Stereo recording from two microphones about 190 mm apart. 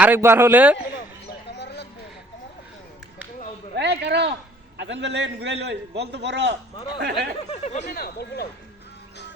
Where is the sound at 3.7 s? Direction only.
65° right (ahead or behind).